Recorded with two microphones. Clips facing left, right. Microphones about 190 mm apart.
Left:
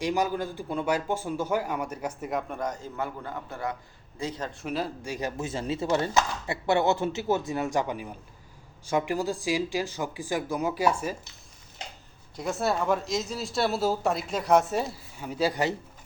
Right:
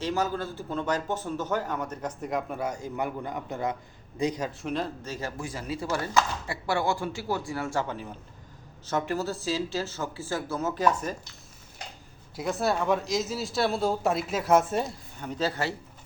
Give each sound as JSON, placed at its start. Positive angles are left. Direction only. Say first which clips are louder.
{"t": 0.0, "sound": "a man's voice", "louder": "left 2 dB", "side_deg": 15}
{"t": 4.6, "sound": "a man's voice", "louder": "left 3 dB", "side_deg": 5}
{"t": 12.4, "sound": "speech", "louder": "even", "side_deg": 0}